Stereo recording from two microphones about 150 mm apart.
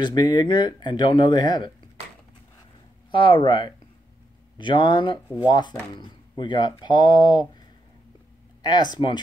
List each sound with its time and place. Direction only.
0.0 s speech: 30° left (ahead or behind)
3.1 s speech: 30° left (ahead or behind)
8.6 s speech: 25° left (ahead or behind)